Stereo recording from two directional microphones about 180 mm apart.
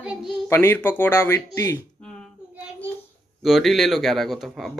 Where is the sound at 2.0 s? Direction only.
5° left (ahead or behind).